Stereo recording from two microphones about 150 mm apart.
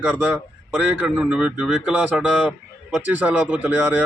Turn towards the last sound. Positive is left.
turn(degrees=-10)  # may be behind; listen again after turning